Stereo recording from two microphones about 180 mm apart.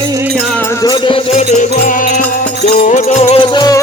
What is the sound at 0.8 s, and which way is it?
Music, 25° left (ahead or behind).